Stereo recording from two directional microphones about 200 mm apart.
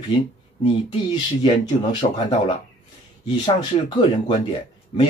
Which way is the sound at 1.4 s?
25° left (ahead or behind).